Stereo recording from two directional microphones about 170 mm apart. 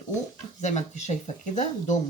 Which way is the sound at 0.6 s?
45° left (ahead or behind).